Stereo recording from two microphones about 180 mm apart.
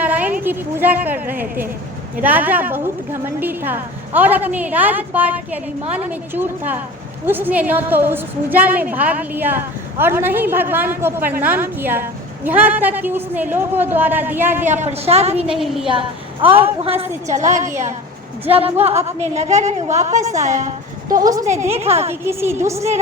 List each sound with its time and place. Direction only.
0.0 s a sound: 10° right (ahead or behind)
0.4 s a woman's voice: 10° right (ahead or behind)
14.6 s a woman's voice: 40° right (ahead or behind)
15.4 s a woman's voice: centre (ahead or behind)
15.9 s a woman's voice: 30° right (ahead or behind)
17.0 s a woman's voice: 40° right (ahead or behind)
20.1 s a woman's voice: 15° right (ahead or behind)
20.4 s speech: 40° right (ahead or behind)
21.2 s a woman's voice: 20° right (ahead or behind)
21.6 s a woman's voice: 35° right (ahead or behind)
22.1 s a woman's voice: 15° right (ahead or behind)